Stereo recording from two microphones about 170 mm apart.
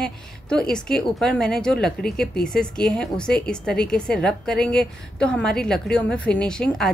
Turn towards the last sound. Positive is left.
turn(degrees=5)  # may be behind; listen again after turning